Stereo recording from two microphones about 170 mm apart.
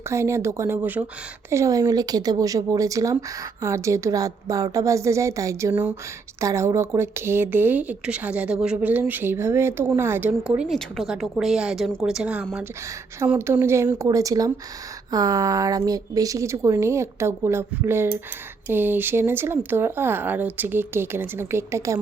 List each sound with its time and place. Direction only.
0.1 s a woman's voice: 15° right (ahead or behind)